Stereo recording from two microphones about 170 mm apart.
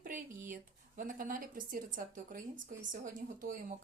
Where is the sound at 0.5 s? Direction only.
50° right (ahead or behind).